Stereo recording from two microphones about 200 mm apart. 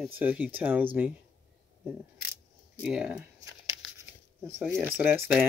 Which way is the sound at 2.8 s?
5° right (ahead or behind).